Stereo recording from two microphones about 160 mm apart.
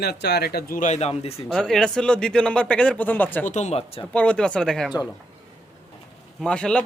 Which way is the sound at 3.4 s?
45° left (ahead or behind).